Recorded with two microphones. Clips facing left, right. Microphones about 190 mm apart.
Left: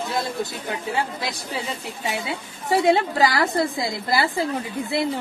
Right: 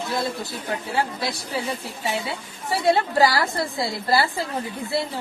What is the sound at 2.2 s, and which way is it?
A woman's voice, 20° left (ahead or behind).